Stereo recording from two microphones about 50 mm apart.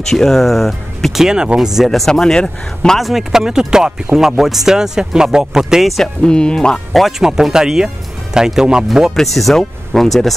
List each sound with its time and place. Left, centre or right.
0.1 s speech: centre
1.2 s speech: centre
1.9 s speech: centre
3.0 s speech: centre
6.2 s speech: centre
6.9 s speech: centre
9.1 s speech: centre